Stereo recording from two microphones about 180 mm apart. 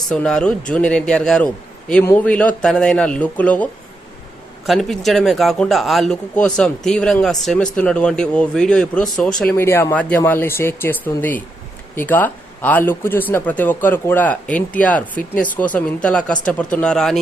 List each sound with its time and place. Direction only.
0.1 s a man's voice: 5° left (ahead or behind)